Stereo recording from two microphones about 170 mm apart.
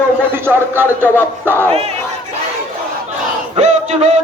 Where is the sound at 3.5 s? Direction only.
40° right (ahead or behind).